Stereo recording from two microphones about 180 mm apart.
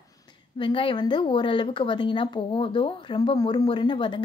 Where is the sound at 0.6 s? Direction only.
30° left (ahead or behind).